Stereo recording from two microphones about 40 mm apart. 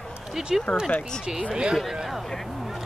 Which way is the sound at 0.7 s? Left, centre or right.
Centre.